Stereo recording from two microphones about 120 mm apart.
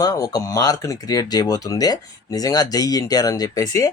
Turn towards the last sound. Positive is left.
turn(degrees=30)  # may be behind; listen again after turning